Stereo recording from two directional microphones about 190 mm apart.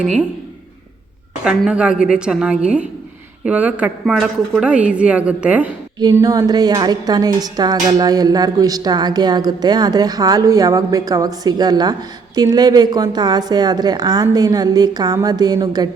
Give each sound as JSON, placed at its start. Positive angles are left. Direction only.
{"t": 1.5, "sound": "a woman's voice", "side_deg": -5}
{"t": 6.0, "sound": "a woman's voice", "side_deg": -20}